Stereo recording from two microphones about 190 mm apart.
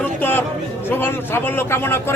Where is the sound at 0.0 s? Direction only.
10° left (ahead or behind).